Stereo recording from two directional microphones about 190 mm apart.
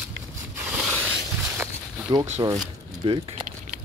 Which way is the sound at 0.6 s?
10° right (ahead or behind).